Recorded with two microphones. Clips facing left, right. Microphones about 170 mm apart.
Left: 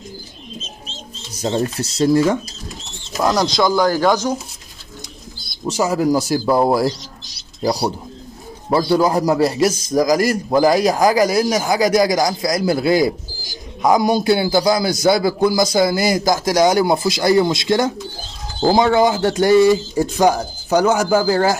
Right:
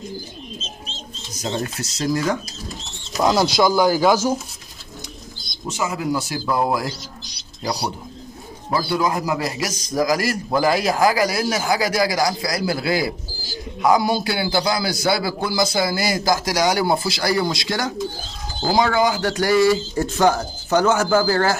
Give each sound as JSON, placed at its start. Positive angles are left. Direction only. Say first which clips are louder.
{"t": 1.3, "sound": "a man's voice", "louder": "left 6 dB", "side_deg": 30}
{"t": 3.2, "sound": "speech", "louder": "even", "side_deg": -5}
{"t": 5.7, "sound": "a man's voice", "louder": "left 7 dB", "side_deg": 40}
{"t": 6.9, "sound": "a sound", "louder": "left 5 dB", "side_deg": 0}
{"t": 8.6, "sound": "a man's voice", "louder": "left 6 dB", "side_deg": 30}
{"t": 9.8, "sound": "a man's voice", "louder": "left 1 dB", "side_deg": 15}